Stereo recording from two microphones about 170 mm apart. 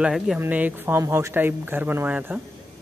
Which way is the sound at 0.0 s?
Centre (ahead or behind).